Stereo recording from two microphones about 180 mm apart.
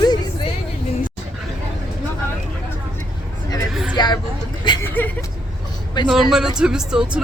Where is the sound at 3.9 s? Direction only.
25° left (ahead or behind).